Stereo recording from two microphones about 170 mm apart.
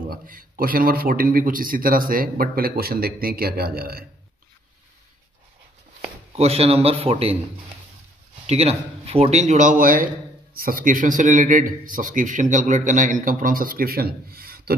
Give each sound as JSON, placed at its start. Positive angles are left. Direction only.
{"t": 0.1, "sound": "a man's voice", "side_deg": -55}
{"t": 6.3, "sound": "speech", "side_deg": -35}
{"t": 8.5, "sound": "a man's voice", "side_deg": -35}